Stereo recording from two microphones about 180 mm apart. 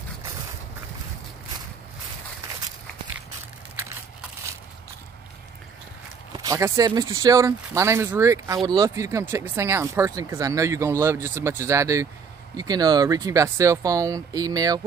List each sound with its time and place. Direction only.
6.3 s speech: 20° right (ahead or behind)